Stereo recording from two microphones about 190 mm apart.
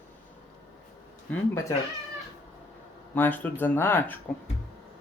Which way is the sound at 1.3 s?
15° left (ahead or behind).